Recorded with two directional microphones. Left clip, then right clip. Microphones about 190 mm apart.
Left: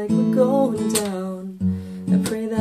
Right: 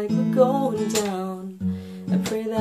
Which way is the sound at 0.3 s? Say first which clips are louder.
Even; centre (ahead or behind).